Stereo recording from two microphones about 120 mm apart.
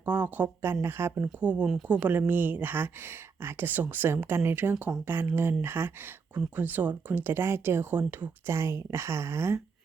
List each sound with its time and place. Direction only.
0.0 s speech: 15° right (ahead or behind)